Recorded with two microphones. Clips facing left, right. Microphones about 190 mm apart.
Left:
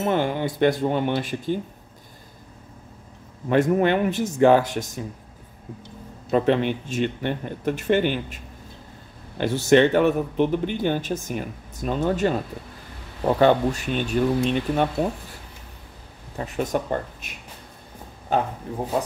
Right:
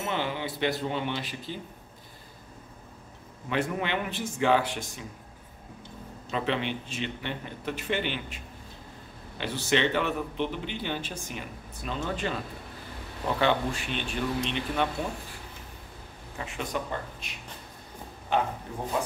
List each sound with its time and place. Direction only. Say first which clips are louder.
0.0 s speech: left 8 dB; 50° left (ahead or behind)
3.4 s speech: left 11 dB; 45° left (ahead or behind)
6.3 s speech: left 9 dB; 45° left (ahead or behind)
9.4 s speech: left 10 dB; 45° left (ahead or behind)
16.3 s speech: left 8 dB; 40° left (ahead or behind)
18.3 s a man's voice: left 4 dB; 40° left (ahead or behind)